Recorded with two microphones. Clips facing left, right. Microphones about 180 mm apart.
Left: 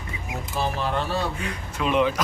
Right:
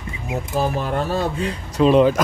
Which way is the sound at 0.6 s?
45° right (ahead or behind).